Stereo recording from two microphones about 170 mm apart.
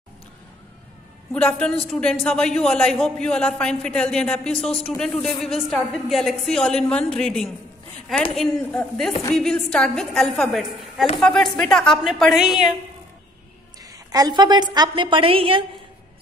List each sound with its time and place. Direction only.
1.3 s a woman's voice: 5° left (ahead or behind)
13.8 s a woman's voice: 20° right (ahead or behind)